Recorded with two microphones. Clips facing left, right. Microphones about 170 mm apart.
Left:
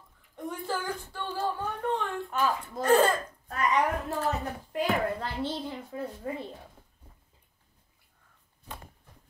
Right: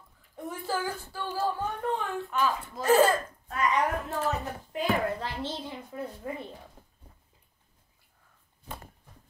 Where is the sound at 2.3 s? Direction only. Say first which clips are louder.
Even; 50° left (ahead or behind).